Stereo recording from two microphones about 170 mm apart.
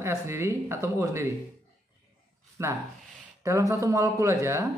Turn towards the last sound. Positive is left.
turn(degrees=-15)  # may be behind; listen again after turning